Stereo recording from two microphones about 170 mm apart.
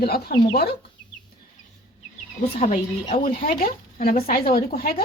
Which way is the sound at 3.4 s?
55° left (ahead or behind).